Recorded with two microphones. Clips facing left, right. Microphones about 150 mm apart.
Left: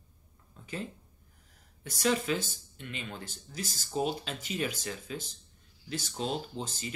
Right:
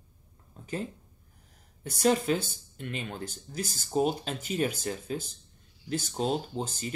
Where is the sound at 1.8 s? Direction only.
45° right (ahead or behind).